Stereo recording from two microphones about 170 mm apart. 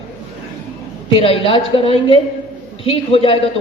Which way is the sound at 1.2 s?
30° left (ahead or behind).